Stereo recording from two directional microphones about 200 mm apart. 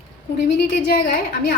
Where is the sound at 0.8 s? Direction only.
50° left (ahead or behind).